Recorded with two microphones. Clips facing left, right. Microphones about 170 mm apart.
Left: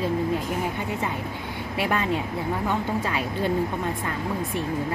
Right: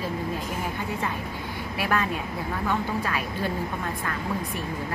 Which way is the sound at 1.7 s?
25° left (ahead or behind).